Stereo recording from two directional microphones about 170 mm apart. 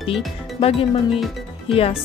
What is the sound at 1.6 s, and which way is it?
Speech, 35° left (ahead or behind).